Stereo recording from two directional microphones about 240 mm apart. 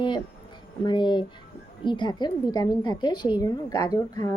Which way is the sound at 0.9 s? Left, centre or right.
Centre.